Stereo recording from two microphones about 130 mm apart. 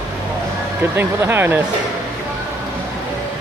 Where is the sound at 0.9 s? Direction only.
15° right (ahead or behind).